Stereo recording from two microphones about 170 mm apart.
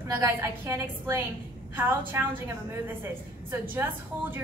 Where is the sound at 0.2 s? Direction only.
15° right (ahead or behind).